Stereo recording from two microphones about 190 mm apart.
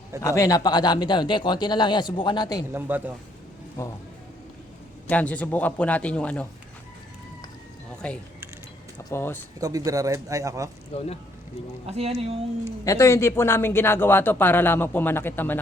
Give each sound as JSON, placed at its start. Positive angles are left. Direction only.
{"t": 0.2, "sound": "speech", "side_deg": 15}
{"t": 2.7, "sound": "a man's voice", "side_deg": -10}
{"t": 3.8, "sound": "a man's voice", "side_deg": 15}
{"t": 5.0, "sound": "a man's voice", "side_deg": 5}
{"t": 9.0, "sound": "a man's voice", "side_deg": 10}
{"t": 9.6, "sound": "a man's voice", "side_deg": -20}
{"t": 10.9, "sound": "speech", "side_deg": 30}
{"t": 11.9, "sound": "speech", "side_deg": -30}
{"t": 12.8, "sound": "a man's voice", "side_deg": 15}